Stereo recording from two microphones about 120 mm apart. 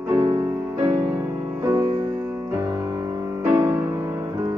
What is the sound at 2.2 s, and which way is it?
Music, 20° right (ahead or behind).